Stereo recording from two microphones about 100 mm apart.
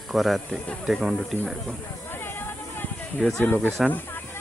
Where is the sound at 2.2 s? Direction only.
20° left (ahead or behind).